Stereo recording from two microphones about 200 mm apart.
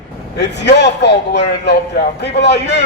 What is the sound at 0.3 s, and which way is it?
A man's voice, 60° left (ahead or behind).